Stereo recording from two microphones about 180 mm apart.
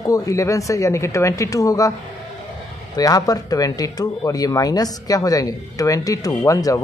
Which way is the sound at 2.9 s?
20° left (ahead or behind).